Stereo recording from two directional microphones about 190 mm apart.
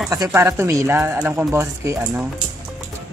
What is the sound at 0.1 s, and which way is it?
A woman's voice, 15° right (ahead or behind).